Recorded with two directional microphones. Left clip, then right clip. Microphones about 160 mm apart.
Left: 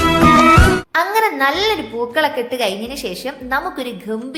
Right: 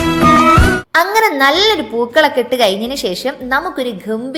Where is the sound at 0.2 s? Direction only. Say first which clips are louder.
Right 2 dB; centre (ahead or behind).